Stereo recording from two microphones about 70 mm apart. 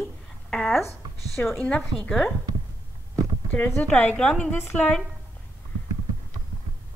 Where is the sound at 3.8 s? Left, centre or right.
Left.